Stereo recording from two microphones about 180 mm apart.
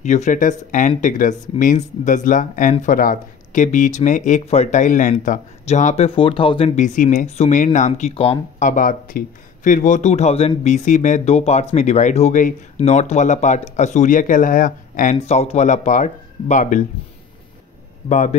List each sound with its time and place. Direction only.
0.0 s speech: 40° left (ahead or behind)
8.6 s speech: 50° left (ahead or behind)
15.1 s speech: 35° left (ahead or behind)
18.0 s speech: 40° left (ahead or behind)